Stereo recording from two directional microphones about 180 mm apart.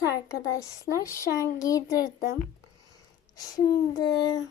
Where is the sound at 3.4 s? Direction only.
20° left (ahead or behind).